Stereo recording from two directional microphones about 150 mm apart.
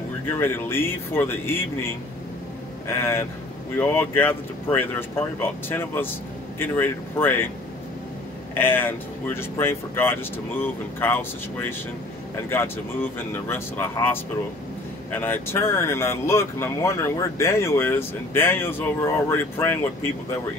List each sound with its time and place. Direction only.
0.3 s speech: 15° left (ahead or behind)
2.9 s speech: 20° left (ahead or behind)
8.5 s speech: 15° left (ahead or behind)